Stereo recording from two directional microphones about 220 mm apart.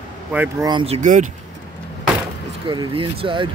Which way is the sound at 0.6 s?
25° right (ahead or behind).